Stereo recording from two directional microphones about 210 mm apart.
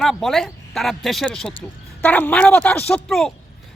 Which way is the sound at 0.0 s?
Centre (ahead or behind).